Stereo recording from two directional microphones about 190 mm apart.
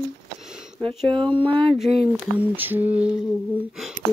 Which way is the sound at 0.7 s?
25° right (ahead or behind).